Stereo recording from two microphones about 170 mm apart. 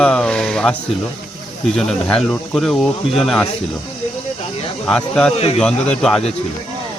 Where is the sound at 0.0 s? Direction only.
5° left (ahead or behind).